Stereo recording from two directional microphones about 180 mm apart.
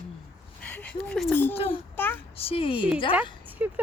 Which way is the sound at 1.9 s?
10° left (ahead or behind).